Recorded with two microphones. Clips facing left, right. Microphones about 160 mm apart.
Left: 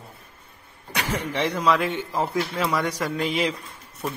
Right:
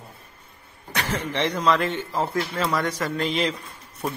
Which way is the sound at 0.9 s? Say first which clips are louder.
Even; 10° left (ahead or behind).